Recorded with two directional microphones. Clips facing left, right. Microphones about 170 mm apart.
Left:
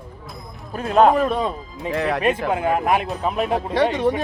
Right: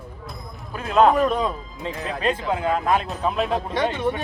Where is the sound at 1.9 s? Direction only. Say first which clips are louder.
Left 9 dB; 75° left (ahead or behind).